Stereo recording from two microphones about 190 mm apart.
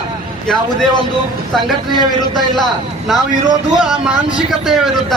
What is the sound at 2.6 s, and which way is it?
A man's voice, centre (ahead or behind).